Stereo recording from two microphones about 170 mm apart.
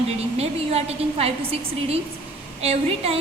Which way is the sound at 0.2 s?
35° right (ahead or behind).